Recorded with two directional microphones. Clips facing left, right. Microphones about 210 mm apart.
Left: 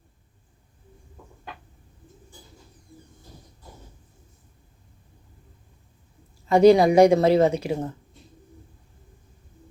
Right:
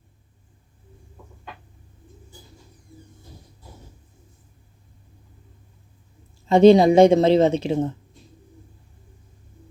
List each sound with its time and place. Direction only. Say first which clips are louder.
6.5 s a woman's voice: right 2 dB; 25° right (ahead or behind)